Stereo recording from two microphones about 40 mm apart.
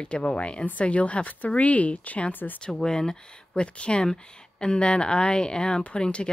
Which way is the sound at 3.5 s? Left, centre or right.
Left.